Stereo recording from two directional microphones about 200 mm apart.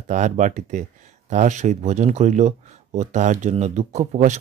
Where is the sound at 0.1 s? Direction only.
40° right (ahead or behind).